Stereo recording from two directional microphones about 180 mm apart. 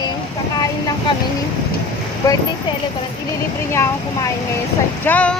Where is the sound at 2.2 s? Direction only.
20° left (ahead or behind).